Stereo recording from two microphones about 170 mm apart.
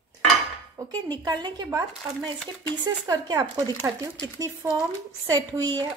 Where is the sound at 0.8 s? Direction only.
25° right (ahead or behind).